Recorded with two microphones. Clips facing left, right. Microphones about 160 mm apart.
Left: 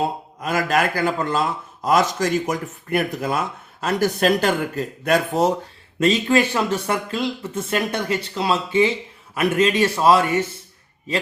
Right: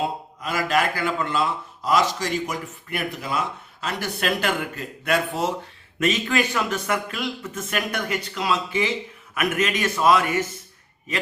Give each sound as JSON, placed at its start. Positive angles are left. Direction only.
{"t": 0.4, "sound": "a man's voice", "side_deg": 45}
{"t": 6.0, "sound": "speech", "side_deg": 30}